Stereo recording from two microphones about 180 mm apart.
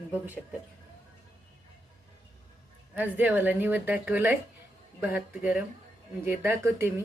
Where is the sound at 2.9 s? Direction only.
10° right (ahead or behind).